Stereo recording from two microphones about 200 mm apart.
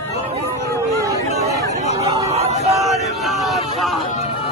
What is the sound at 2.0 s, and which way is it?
Hubbub, 20° right (ahead or behind).